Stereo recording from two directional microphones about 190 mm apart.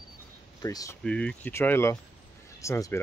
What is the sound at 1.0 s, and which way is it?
Speech, 5° left (ahead or behind).